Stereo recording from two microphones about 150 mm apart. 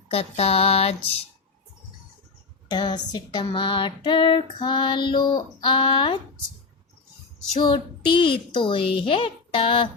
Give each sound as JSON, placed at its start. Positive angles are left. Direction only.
{"t": 0.1, "sound": "speech", "side_deg": 40}
{"t": 2.6, "sound": "speech", "side_deg": 30}
{"t": 7.6, "sound": "speech", "side_deg": 30}